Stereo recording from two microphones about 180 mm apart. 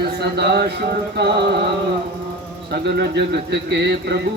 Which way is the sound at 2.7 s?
60° right (ahead or behind).